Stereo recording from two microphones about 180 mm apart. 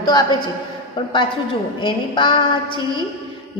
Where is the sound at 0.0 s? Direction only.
25° left (ahead or behind).